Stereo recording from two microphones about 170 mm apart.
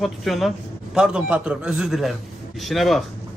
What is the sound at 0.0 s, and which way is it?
A man's voice, centre (ahead or behind).